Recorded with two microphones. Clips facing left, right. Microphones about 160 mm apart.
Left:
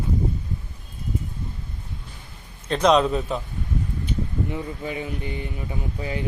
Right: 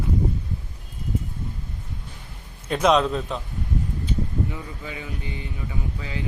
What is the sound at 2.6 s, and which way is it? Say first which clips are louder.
Speech: left 1 dB; 5° right (ahead or behind).